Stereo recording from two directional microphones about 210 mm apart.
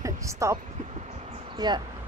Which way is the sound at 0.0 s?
15° right (ahead or behind).